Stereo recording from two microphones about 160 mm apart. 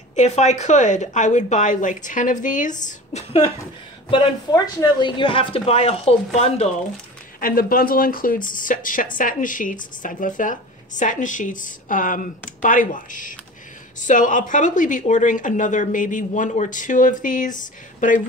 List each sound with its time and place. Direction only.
0.1 s speech: 45° left (ahead or behind)
4.1 s speech: 25° left (ahead or behind); by 6.7 s 40° left (ahead or behind)
7.3 s speech: 60° left (ahead or behind)